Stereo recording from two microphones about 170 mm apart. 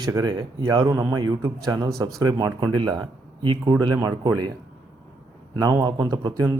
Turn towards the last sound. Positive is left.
turn(degrees=-20)  # may be behind; listen again after turning